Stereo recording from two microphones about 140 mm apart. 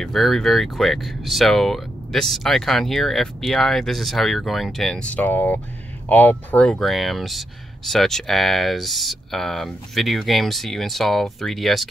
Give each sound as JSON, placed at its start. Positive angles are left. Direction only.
{"t": 0.0, "sound": "speech", "side_deg": 0}